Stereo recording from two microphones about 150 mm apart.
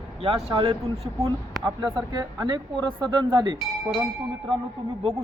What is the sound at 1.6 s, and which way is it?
Speech, 15° right (ahead or behind).